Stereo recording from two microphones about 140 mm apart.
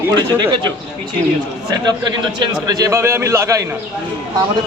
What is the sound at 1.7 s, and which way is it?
A man's voice, 30° right (ahead or behind).